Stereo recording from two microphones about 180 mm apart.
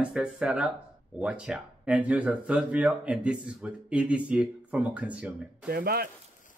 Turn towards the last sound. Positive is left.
turn(degrees=-60)  # may be behind; listen again after turning